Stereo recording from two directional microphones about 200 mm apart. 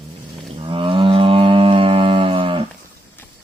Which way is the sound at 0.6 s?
25° right (ahead or behind).